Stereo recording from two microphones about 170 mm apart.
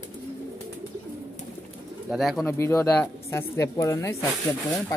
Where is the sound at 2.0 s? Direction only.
Centre (ahead or behind).